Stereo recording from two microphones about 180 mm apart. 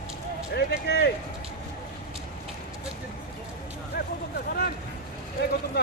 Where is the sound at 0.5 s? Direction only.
65° left (ahead or behind).